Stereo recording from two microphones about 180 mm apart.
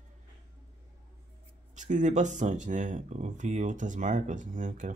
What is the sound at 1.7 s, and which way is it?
Speech, 45° right (ahead or behind).